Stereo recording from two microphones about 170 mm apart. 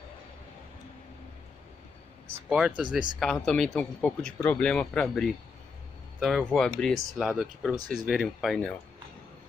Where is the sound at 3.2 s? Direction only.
5° left (ahead or behind).